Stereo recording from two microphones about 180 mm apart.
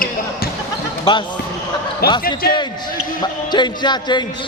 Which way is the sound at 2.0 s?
60° left (ahead or behind).